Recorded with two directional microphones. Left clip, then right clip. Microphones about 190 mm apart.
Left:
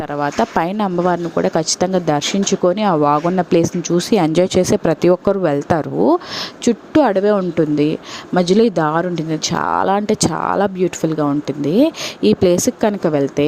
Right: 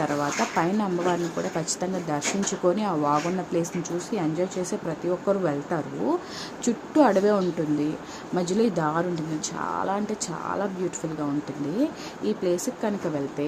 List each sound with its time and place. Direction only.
0.2 s speech: 50° left (ahead or behind)
11.8 s speech: 55° left (ahead or behind)